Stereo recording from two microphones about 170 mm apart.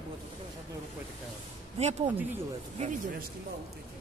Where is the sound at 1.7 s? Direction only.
35° right (ahead or behind).